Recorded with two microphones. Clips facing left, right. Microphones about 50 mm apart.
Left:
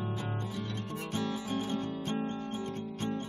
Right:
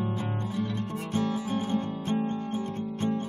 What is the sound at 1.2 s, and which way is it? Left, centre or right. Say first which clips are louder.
Music: right 6 dB; right.